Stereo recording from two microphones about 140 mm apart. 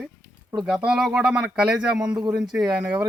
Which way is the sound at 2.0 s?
30° right (ahead or behind).